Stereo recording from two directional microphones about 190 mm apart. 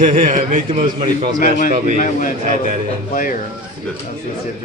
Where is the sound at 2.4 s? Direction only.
40° right (ahead or behind).